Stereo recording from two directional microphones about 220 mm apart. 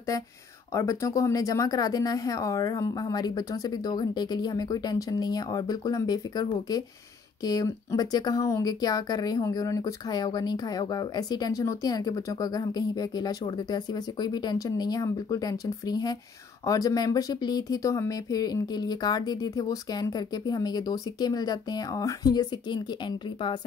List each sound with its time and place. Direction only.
0.7 s speech: 15° left (ahead or behind)